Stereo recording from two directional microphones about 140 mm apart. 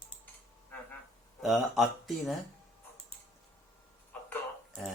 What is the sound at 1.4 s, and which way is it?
Speech, centre (ahead or behind).